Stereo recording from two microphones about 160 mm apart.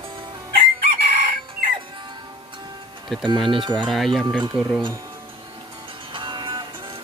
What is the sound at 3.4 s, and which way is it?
Speech, 30° right (ahead or behind).